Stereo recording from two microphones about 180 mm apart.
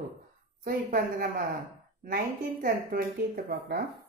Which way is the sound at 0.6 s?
55° right (ahead or behind).